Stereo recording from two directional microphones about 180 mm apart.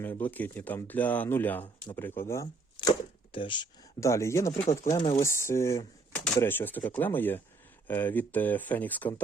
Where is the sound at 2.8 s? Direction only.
30° left (ahead or behind).